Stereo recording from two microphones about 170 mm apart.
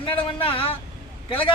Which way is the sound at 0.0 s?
30° left (ahead or behind).